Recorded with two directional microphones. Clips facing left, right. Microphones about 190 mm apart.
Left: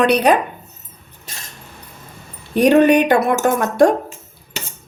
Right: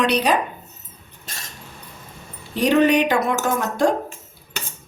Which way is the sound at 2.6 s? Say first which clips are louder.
Left 5 dB; 60° left (ahead or behind).